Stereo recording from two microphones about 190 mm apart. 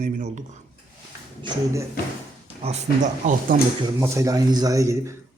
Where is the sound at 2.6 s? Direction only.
35° right (ahead or behind).